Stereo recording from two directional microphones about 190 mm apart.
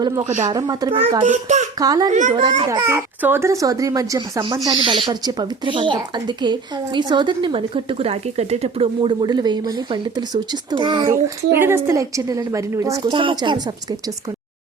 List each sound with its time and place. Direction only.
0.0 s a child's voice: 20° right (ahead or behind)
1.2 s a child's voice: 40° right (ahead or behind)
1.8 s a child's voice: 20° right (ahead or behind)
2.0 s a child's voice: 40° right (ahead or behind)
2.6 s a child's voice: 15° right (ahead or behind)